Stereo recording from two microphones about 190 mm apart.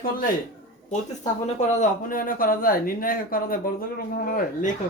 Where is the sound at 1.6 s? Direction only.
45° left (ahead or behind).